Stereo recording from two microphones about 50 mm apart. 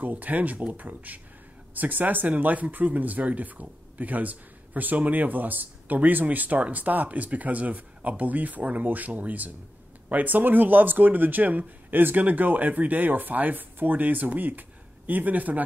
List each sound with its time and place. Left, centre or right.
0.0 s speech: right